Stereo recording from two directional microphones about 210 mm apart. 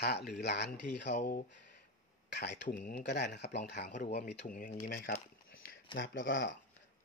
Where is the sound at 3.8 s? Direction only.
35° left (ahead or behind).